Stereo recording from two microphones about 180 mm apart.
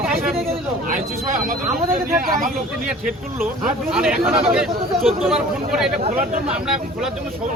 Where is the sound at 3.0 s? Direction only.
10° right (ahead or behind).